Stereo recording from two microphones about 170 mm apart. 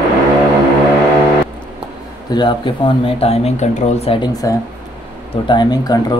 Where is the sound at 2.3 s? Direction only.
25° left (ahead or behind).